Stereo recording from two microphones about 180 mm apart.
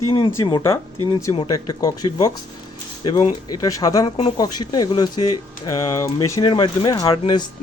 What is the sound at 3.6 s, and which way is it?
Speech, 20° left (ahead or behind).